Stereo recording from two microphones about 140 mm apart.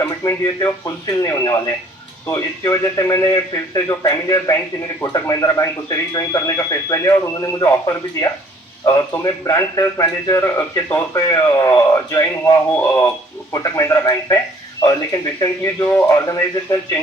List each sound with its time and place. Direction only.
0.0 s a man's voice: 20° left (ahead or behind)
13.5 s a man's voice: 25° left (ahead or behind)
15.8 s speech: 10° left (ahead or behind)
16.0 s a man's voice: 25° left (ahead or behind)